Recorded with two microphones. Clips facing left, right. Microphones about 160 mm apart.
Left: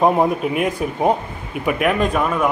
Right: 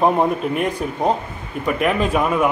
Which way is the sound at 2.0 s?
10° right (ahead or behind).